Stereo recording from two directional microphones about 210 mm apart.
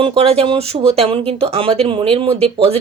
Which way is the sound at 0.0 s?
25° right (ahead or behind).